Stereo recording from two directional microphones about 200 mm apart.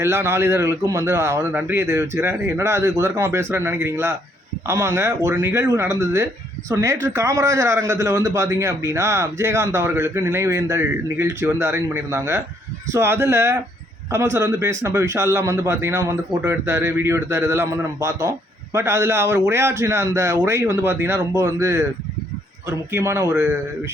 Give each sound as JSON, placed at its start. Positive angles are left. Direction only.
{"t": 0.0, "sound": "a man's voice", "side_deg": -10}